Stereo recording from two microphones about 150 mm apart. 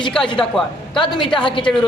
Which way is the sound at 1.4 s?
35° left (ahead or behind).